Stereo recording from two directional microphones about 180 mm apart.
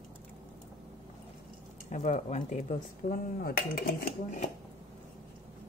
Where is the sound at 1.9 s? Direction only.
40° left (ahead or behind); by 4.1 s 55° left (ahead or behind).